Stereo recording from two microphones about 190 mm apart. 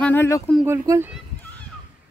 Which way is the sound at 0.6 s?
15° right (ahead or behind).